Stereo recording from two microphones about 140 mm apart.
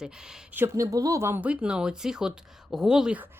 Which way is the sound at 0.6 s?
20° right (ahead or behind).